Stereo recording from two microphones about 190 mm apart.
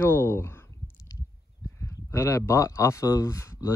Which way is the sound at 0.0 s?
10° left (ahead or behind).